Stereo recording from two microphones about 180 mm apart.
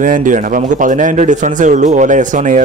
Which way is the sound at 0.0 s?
45° right (ahead or behind).